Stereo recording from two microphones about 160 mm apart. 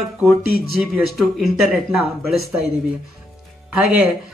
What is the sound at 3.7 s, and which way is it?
Speech, 5° right (ahead or behind).